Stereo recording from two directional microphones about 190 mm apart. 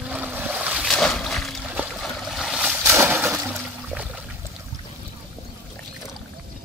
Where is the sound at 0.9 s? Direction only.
5° left (ahead or behind).